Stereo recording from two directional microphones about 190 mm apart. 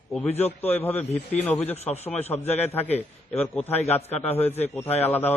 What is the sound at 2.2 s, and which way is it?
Speech, 35° left (ahead or behind).